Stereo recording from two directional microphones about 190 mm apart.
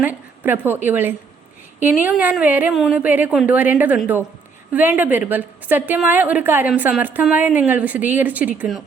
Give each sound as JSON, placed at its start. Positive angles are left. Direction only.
{"t": 0.0, "sound": "a woman's voice", "side_deg": -10}